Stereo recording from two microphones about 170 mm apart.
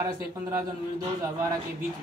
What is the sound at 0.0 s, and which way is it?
Speech, 15° right (ahead or behind).